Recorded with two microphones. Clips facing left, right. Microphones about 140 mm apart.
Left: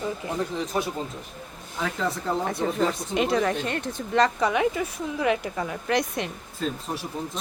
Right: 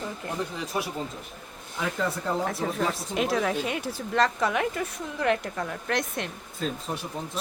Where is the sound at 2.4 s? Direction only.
Centre (ahead or behind).